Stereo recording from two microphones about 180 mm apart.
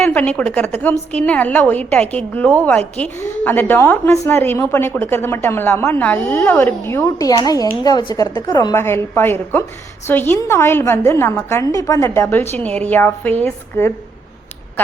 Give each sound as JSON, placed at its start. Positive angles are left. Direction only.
{"t": 0.0, "sound": "a woman's voice", "side_deg": 10}